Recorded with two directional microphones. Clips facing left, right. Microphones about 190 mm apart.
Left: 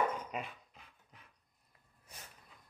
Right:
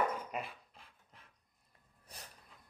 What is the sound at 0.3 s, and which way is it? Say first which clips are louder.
Dog: even; 5° right (ahead or behind).